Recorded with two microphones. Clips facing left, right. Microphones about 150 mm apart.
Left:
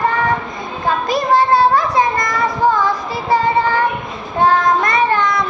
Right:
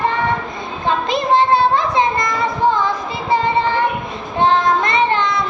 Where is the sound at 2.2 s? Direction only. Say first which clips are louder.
Left 1 dB; 20° right (ahead or behind).